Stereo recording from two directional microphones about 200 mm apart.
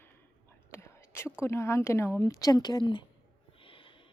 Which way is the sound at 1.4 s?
15° left (ahead or behind).